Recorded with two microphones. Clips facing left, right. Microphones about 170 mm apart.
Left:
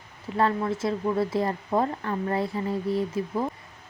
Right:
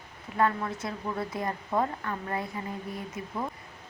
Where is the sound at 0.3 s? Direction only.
25° left (ahead or behind).